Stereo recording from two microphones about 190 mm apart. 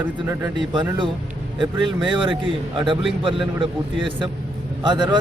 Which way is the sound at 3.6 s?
25° right (ahead or behind).